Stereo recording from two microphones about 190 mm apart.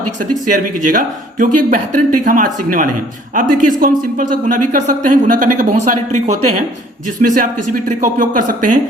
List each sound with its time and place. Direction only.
0.2 s speech: 45° right (ahead or behind)